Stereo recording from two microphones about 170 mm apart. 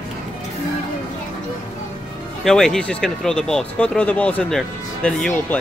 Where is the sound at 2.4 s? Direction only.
5° left (ahead or behind).